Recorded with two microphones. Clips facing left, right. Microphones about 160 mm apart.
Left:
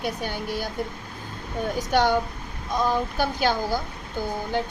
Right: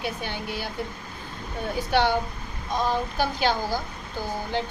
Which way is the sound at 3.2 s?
45° left (ahead or behind).